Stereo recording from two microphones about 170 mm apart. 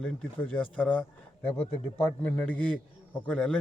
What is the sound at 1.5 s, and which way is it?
Speech, 35° left (ahead or behind).